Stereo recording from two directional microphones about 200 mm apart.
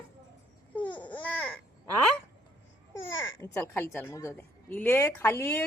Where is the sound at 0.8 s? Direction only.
5° left (ahead or behind).